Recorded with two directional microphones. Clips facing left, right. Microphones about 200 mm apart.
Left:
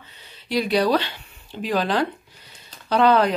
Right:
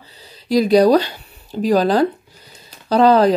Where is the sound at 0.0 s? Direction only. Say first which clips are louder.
Right 5 dB; 35° right (ahead or behind).